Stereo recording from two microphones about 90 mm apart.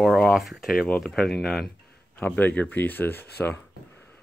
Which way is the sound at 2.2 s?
20° left (ahead or behind).